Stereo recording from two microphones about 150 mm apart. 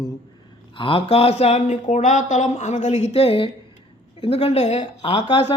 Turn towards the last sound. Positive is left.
turn(degrees=40)  # may be behind; listen again after turning